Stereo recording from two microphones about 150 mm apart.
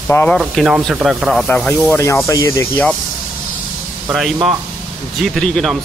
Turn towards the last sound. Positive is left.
turn(degrees=5)  # may be behind; listen again after turning